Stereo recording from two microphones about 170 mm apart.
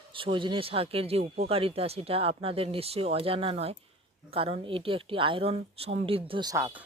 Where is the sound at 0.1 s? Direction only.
30° right (ahead or behind).